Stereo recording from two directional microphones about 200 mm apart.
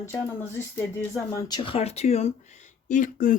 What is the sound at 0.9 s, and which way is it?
Speech, 15° left (ahead or behind).